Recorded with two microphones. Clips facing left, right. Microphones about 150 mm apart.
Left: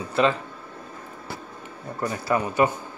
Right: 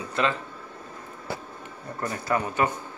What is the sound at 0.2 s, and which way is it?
Speech, 15° left (ahead or behind).